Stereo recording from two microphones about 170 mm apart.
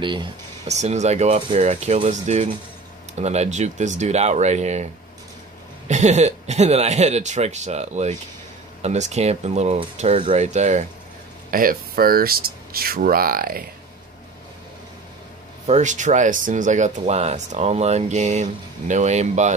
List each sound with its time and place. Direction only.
0.0 s speech: 30° right (ahead or behind)
0.7 s speech: 40° right (ahead or behind)
5.9 s speech: 45° right (ahead or behind)
11.5 s speech: 60° right (ahead or behind)
15.6 s speech: 45° right (ahead or behind)